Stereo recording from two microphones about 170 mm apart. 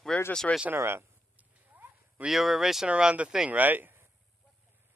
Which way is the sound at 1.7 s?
10° right (ahead or behind).